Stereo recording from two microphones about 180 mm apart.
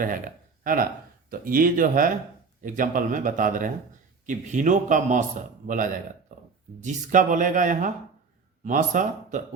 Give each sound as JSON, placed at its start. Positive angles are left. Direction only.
{"t": 0.0, "sound": "speech", "side_deg": -50}